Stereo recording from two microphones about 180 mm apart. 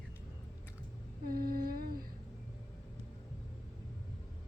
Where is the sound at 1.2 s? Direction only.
55° right (ahead or behind).